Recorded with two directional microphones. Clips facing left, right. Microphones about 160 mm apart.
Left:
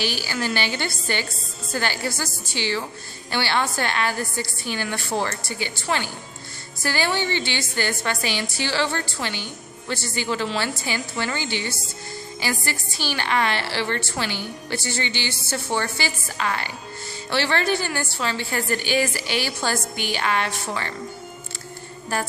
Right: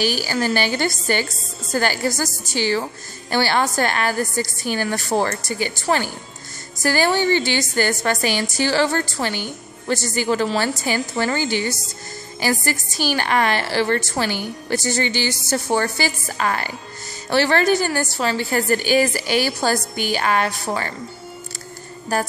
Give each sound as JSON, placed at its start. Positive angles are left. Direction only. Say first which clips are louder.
{"t": 0.0, "sound": "a woman's voice", "louder": "right 5 dB", "side_deg": -45}
{"t": 22.1, "sound": "a woman's voice", "louder": "right 4 dB", "side_deg": -40}